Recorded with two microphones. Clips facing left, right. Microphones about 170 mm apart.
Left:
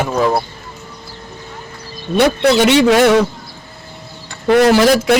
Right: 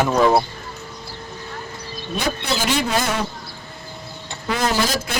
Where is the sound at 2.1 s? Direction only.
75° left (ahead or behind).